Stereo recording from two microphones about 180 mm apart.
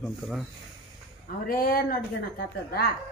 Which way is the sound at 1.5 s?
55° left (ahead or behind).